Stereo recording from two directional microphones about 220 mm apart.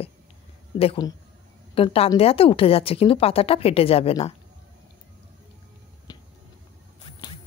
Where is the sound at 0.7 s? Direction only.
20° left (ahead or behind).